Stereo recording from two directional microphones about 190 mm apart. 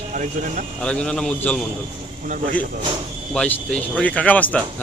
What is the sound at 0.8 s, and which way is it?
Speech, 5° left (ahead or behind).